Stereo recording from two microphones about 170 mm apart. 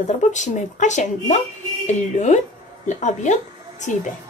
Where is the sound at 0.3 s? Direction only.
45° left (ahead or behind).